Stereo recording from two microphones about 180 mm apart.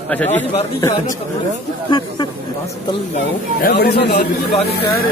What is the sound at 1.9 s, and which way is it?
Speech, 25° left (ahead or behind).